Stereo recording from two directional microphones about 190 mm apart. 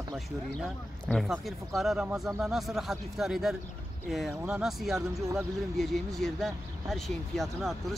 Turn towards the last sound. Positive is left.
turn(degrees=0)  # may be behind; listen again after turning